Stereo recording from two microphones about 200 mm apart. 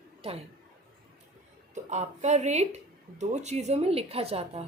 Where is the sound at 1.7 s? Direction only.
35° right (ahead or behind).